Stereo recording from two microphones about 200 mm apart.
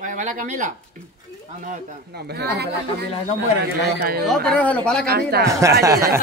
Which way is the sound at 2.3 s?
55° right (ahead or behind).